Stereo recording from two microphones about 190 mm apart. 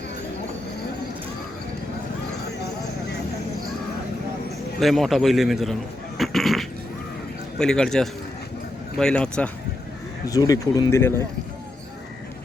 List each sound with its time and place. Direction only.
4.8 s a man's voice: centre (ahead or behind)
10.2 s speech: 20° left (ahead or behind)